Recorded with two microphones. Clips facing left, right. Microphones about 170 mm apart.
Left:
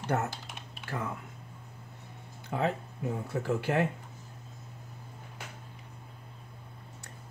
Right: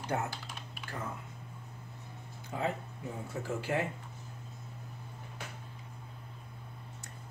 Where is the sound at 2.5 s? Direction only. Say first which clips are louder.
Left 4 dB; 75° left (ahead or behind).